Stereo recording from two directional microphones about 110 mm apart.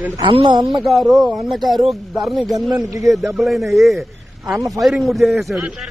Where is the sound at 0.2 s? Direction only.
50° right (ahead or behind).